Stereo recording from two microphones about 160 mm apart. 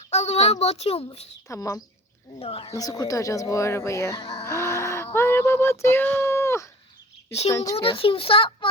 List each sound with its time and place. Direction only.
0.1 s speech: 45° left (ahead or behind)
1.5 s speech: 20° left (ahead or behind)
2.4 s a child's voice: 40° left (ahead or behind)
2.7 s speech: 25° left (ahead or behind)
4.2 s speech: 35° left (ahead or behind)
4.4 s music: 15° left (ahead or behind)
5.1 s a sound: 15° left (ahead or behind)
5.8 s speech: 15° left (ahead or behind)
7.8 s a child's voice: 35° left (ahead or behind)